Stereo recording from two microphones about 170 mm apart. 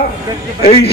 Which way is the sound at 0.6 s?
35° left (ahead or behind).